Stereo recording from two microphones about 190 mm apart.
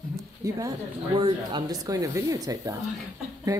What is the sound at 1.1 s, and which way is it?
Speech, 25° right (ahead or behind).